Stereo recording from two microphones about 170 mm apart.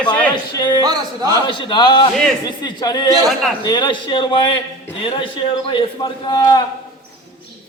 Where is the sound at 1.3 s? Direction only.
30° left (ahead or behind).